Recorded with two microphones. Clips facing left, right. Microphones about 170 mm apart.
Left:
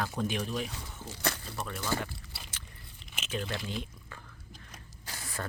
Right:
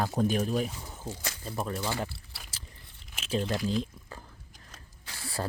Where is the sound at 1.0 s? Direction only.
70° left (ahead or behind).